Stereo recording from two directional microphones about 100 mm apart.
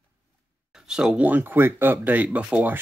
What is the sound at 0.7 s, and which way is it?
Speech, 5° right (ahead or behind).